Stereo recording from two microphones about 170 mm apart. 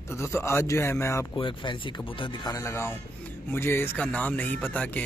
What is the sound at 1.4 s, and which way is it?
Speech, 30° left (ahead or behind).